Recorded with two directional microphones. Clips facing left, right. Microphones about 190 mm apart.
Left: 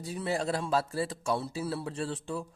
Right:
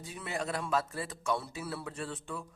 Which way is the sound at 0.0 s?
35° left (ahead or behind).